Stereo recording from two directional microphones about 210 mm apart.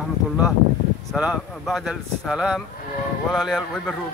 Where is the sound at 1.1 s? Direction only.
5° right (ahead or behind).